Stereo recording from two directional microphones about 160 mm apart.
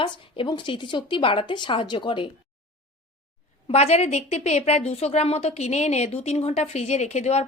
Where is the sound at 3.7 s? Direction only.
40° left (ahead or behind).